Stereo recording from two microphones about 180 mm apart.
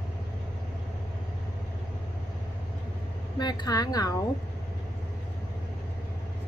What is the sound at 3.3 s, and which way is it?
Speech, 25° left (ahead or behind).